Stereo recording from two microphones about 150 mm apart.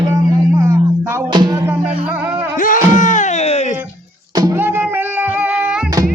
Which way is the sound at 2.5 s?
60° left (ahead or behind).